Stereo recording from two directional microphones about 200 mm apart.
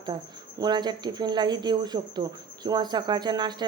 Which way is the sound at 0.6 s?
20° right (ahead or behind).